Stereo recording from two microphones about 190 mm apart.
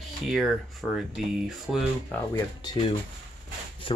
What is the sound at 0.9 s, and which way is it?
Speech, centre (ahead or behind).